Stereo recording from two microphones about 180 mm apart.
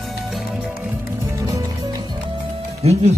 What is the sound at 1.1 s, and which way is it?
Music, 15° right (ahead or behind).